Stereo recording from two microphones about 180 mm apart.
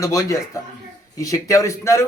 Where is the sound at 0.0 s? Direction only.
20° left (ahead or behind).